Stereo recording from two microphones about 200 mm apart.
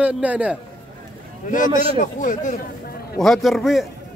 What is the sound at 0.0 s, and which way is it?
Speech, 5° right (ahead or behind).